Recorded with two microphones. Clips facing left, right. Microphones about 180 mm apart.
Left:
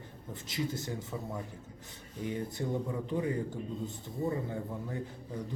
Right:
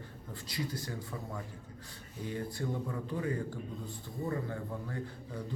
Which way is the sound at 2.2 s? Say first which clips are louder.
Left 2 dB; 20° left (ahead or behind).